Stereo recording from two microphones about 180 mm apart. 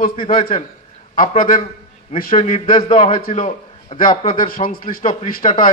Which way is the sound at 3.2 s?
45° left (ahead or behind).